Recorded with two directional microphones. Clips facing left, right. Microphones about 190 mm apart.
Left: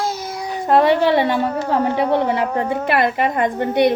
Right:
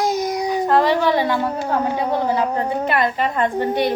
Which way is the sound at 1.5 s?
10° right (ahead or behind).